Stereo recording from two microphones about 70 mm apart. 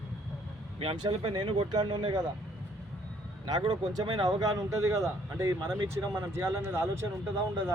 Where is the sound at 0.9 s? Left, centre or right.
Right.